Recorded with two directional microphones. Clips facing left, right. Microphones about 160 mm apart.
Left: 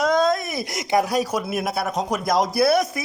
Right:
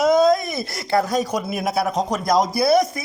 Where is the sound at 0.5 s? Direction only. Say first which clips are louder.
Even; 15° left (ahead or behind).